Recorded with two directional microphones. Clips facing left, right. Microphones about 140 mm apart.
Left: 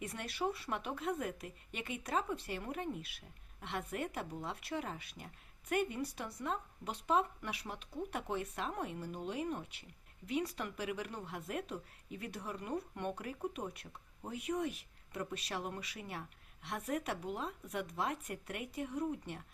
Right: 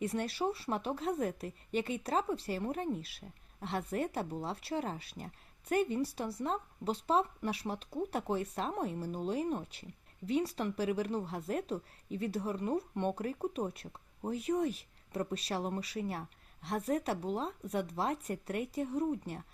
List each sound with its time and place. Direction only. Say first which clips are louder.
0.0 s speech: right 5 dB; 35° right (ahead or behind)